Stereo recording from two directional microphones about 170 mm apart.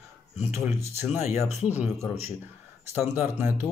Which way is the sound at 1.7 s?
Centre (ahead or behind).